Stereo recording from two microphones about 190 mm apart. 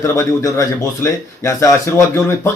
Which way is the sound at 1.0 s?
15° left (ahead or behind).